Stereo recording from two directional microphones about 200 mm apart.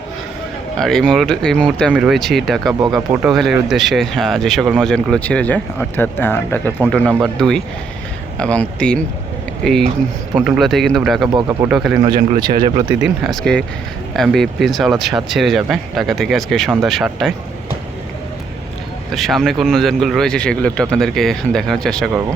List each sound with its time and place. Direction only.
0.8 s speech: centre (ahead or behind)
6.7 s speech: 5° right (ahead or behind)
11.3 s speech: 15° right (ahead or behind)
12.0 s speech: 20° right (ahead or behind)
13.2 s speech: centre (ahead or behind)
19.1 s speech: centre (ahead or behind)